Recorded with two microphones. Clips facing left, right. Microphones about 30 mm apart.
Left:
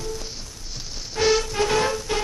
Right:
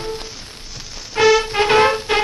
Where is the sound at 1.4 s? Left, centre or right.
Right.